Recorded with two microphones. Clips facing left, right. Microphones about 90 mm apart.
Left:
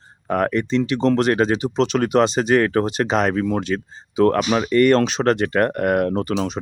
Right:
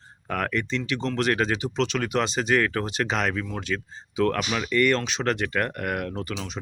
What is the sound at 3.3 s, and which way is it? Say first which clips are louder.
Speech: left 9 dB; 40° left (ahead or behind).